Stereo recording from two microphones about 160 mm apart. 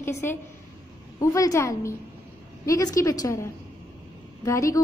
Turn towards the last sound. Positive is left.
turn(degrees=20)  # may be behind; listen again after turning